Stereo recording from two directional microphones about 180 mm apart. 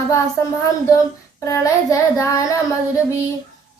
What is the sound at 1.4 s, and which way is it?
Child singing, 15° left (ahead or behind).